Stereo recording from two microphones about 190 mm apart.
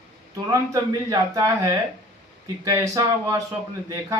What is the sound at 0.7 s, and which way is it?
Speech, 20° right (ahead or behind).